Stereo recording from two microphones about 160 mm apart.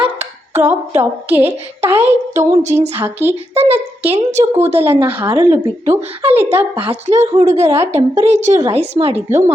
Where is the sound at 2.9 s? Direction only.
15° right (ahead or behind).